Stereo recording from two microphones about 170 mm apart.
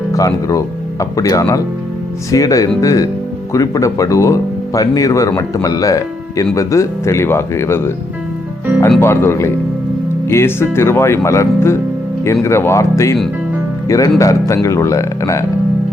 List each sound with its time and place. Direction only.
0.1 s speech: 20° left (ahead or behind)
9.0 s speech: 15° left (ahead or behind)